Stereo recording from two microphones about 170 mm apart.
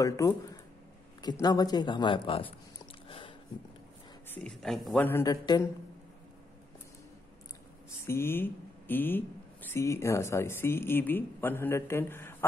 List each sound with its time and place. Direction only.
0.0 s speech: 20° left (ahead or behind)
1.4 s speech: 25° left (ahead or behind)
3.1 s a sound: 30° left (ahead or behind)
4.3 s speech: 5° left (ahead or behind)
5.0 s speech: 20° left (ahead or behind)
8.0 s speech: 15° left (ahead or behind)